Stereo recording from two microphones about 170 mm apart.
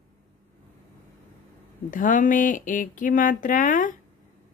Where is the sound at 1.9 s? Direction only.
50° left (ahead or behind).